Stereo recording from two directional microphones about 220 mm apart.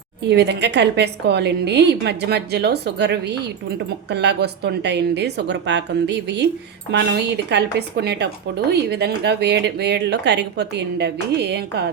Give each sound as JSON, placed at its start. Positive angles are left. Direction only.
{"t": 0.3, "sound": "a woman's voice", "side_deg": -50}